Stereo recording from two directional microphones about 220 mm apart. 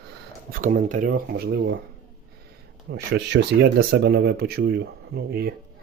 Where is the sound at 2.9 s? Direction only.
50° right (ahead or behind).